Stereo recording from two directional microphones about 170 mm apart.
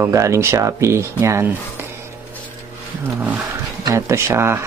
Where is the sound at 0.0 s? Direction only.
15° right (ahead or behind).